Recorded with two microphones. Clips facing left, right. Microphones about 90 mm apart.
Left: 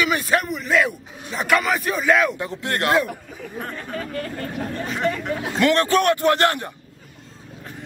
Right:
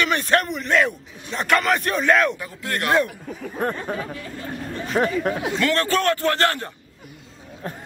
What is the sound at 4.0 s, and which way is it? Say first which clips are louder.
Speech: left 3 dB; 60° left (ahead or behind).